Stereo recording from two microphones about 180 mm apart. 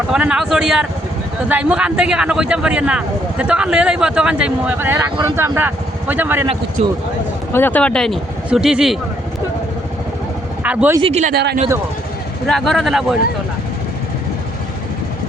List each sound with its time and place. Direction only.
0.1 s a man's voice: 5° right (ahead or behind)
6.8 s a man's voice: 35° right (ahead or behind)
7.5 s a man's voice: 10° left (ahead or behind)
10.6 s speech: 10° right (ahead or behind)
11.0 s a man's voice: 35° right (ahead or behind)
11.3 s speech: 65° right (ahead or behind)
12.5 s a man's voice: centre (ahead or behind)